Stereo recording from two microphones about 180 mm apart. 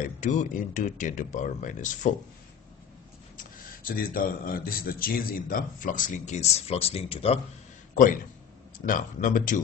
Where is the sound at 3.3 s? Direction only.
50° left (ahead or behind); by 7.4 s 35° left (ahead or behind).